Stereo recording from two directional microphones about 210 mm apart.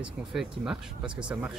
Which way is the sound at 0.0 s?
5° right (ahead or behind).